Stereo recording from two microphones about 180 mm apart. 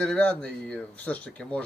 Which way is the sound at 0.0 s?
5° left (ahead or behind).